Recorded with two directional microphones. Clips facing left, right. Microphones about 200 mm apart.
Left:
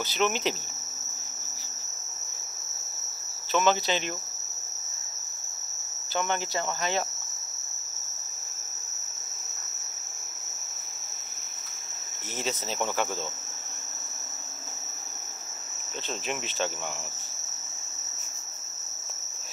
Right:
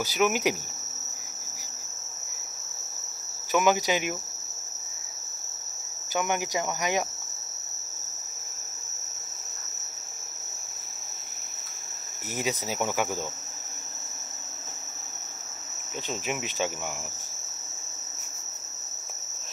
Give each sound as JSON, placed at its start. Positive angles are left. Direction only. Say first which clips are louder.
{"t": 0.0, "sound": "cricket", "louder": "right 3 dB", "side_deg": -10}
{"t": 3.5, "sound": "cricket", "louder": "right 2 dB", "side_deg": -15}
{"t": 6.1, "sound": "cricket", "louder": "right 2 dB", "side_deg": -15}
{"t": 12.4, "sound": "cricket", "louder": "right 1 dB", "side_deg": -10}
{"t": 16.3, "sound": "cricket", "louder": "right 1 dB", "side_deg": -10}